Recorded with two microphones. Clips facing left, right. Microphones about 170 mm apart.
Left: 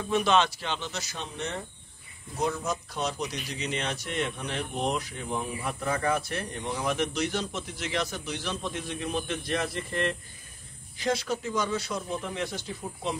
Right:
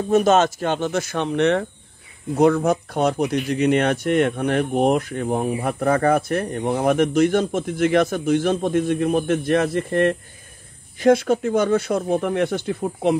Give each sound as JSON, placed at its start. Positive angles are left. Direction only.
{"t": 0.1, "sound": "speech", "side_deg": -45}